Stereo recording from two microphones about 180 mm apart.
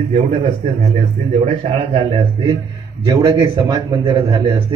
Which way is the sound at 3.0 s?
20° right (ahead or behind).